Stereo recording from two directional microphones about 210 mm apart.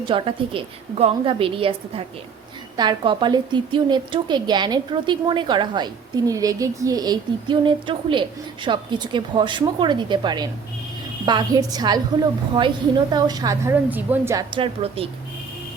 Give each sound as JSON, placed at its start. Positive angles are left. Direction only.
{"t": 0.0, "sound": "a woman's voice", "side_deg": -25}
{"t": 14.5, "sound": "a woman's voice", "side_deg": -25}